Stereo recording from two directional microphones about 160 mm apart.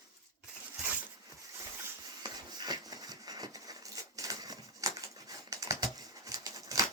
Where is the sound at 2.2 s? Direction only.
25° right (ahead or behind).